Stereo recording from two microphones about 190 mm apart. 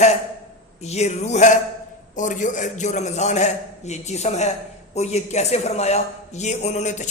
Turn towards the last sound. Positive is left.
turn(degrees=40)  # may be behind; listen again after turning